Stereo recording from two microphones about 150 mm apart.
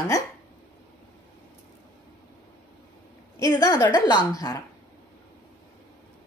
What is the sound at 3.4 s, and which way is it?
A woman's voice, 25° left (ahead or behind).